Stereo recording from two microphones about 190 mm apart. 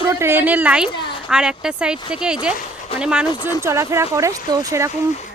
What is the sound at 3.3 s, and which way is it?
Speech, 20° left (ahead or behind).